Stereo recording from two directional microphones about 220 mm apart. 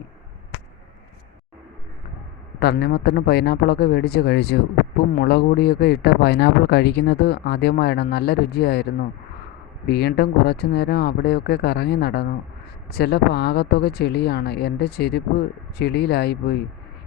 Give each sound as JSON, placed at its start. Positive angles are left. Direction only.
{"t": 2.6, "sound": "speech", "side_deg": 50}